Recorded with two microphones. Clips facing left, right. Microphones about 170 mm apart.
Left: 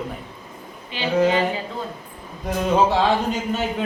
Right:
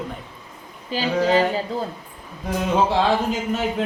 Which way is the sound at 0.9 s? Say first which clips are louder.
Right 4 dB; 40° right (ahead or behind).